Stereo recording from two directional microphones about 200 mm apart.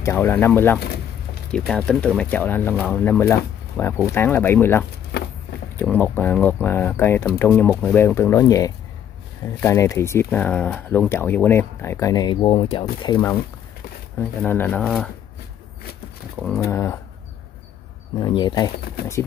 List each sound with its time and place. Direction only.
0.0 s speech: 15° left (ahead or behind)
0.7 s speech: 55° left (ahead or behind)
1.7 s speech: 5° left (ahead or behind); by 13.2 s 20° left (ahead or behind)
14.4 s speech: 10° left (ahead or behind)
16.3 s speech: 5° left (ahead or behind)
18.2 s speech: 20° left (ahead or behind)